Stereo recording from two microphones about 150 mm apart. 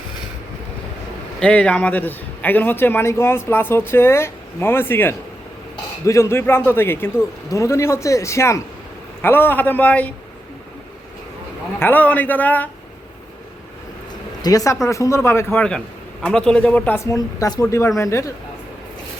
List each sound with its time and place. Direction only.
1.4 s a man's voice: 10° left (ahead or behind)
11.8 s a man's voice: 10° left (ahead or behind)
14.4 s a man's voice: 25° left (ahead or behind)
17.1 s a man's voice: 20° left (ahead or behind)